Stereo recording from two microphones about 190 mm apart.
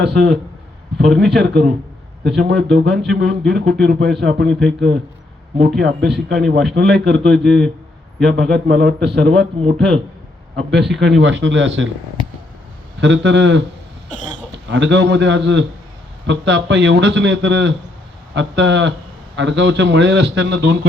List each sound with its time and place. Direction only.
0.0 s a man's voice: 65° right (ahead or behind)
11.0 s a man's voice: 70° right (ahead or behind)
13.0 s a man's voice: 70° right (ahead or behind)
14.1 s speech: 40° left (ahead or behind)
14.7 s a man's voice: 70° right (ahead or behind)